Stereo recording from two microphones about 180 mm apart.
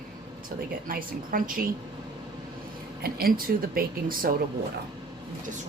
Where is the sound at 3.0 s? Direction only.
55° right (ahead or behind).